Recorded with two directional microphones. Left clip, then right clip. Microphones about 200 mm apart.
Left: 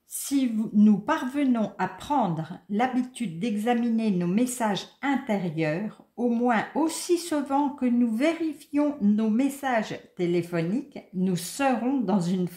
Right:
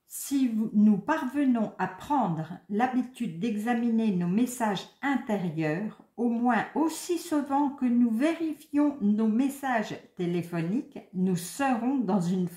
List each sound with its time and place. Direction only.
0.3 s speech: 35° left (ahead or behind)